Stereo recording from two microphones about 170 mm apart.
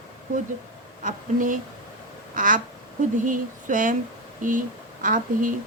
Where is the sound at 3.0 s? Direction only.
50° right (ahead or behind).